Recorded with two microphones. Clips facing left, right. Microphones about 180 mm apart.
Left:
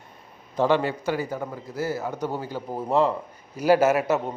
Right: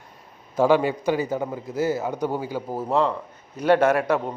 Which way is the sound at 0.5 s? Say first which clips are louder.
Right 3 dB; 10° right (ahead or behind).